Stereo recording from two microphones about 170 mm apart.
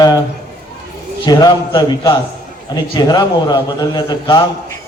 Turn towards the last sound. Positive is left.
turn(degrees=25)  # may be behind; listen again after turning